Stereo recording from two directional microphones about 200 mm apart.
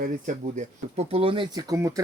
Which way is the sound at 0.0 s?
40° right (ahead or behind).